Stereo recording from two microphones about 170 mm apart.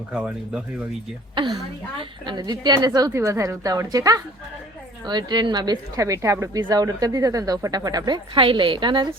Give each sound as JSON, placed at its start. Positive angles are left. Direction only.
{"t": 0.1, "sound": "speech", "side_deg": -5}
{"t": 1.4, "sound": "speech", "side_deg": -30}